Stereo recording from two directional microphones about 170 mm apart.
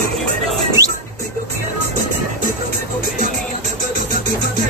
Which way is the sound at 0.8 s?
20° right (ahead or behind).